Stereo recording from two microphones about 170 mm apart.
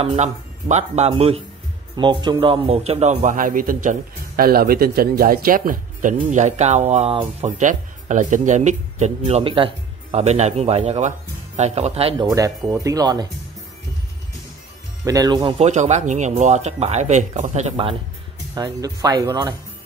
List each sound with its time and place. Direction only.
0.0 s speech: 40° right (ahead or behind)
12.7 s speech: 20° right (ahead or behind)
15.0 s speech: 20° right (ahead or behind)
15.6 s speech: 45° right (ahead or behind)
18.5 s speech: 20° right (ahead or behind)